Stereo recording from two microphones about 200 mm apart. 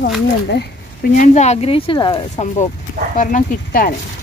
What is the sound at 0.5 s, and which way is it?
Speech, 55° left (ahead or behind).